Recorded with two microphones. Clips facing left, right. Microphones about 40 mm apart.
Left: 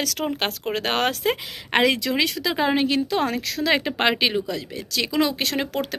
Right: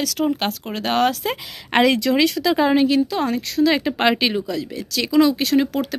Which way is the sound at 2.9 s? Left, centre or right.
Left.